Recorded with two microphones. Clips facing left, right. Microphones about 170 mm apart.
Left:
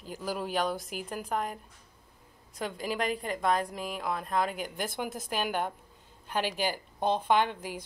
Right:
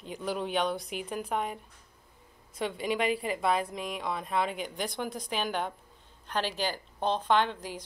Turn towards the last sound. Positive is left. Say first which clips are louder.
# even
turn(degrees=10)  # may be behind; listen again after turning